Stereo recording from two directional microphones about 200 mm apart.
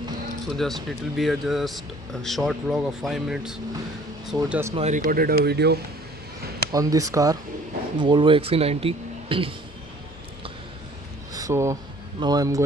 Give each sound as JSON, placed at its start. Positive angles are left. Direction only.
{"t": 0.5, "sound": "speech", "side_deg": 0}
{"t": 4.7, "sound": "speech", "side_deg": -35}
{"t": 6.7, "sound": "speech", "side_deg": -15}
{"t": 11.3, "sound": "speech", "side_deg": -15}